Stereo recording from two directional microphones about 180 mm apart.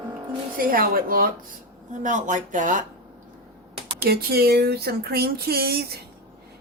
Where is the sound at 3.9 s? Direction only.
60° right (ahead or behind).